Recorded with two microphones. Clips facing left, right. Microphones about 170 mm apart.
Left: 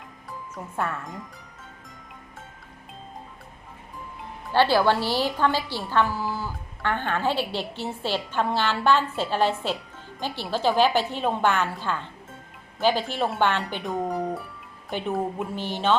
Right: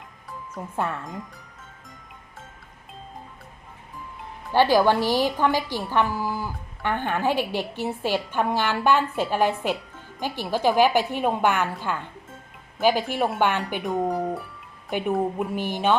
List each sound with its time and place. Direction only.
0.8 s speech: 20° right (ahead or behind)
4.5 s a woman's voice: 15° right (ahead or behind)
13.8 s speech: centre (ahead or behind)
15.5 s a woman's voice: 15° right (ahead or behind)